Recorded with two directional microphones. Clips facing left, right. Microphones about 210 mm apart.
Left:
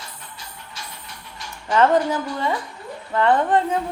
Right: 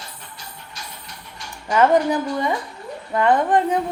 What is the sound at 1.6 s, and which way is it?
Speech, 10° right (ahead or behind).